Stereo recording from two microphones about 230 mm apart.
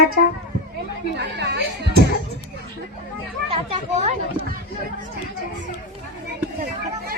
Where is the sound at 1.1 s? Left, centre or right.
Right.